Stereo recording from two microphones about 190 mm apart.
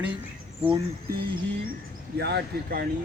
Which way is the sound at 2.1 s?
60° right (ahead or behind).